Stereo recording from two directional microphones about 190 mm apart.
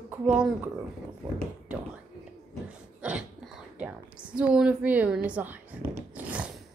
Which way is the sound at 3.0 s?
5° right (ahead or behind).